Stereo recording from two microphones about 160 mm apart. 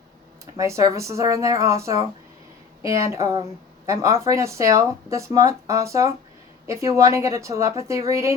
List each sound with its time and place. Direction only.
0.5 s speech: 20° right (ahead or behind)
3.1 s speech: 20° right (ahead or behind)